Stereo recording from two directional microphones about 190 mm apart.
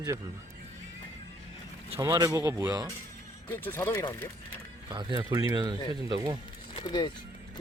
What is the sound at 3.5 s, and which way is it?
Speech, 10° left (ahead or behind).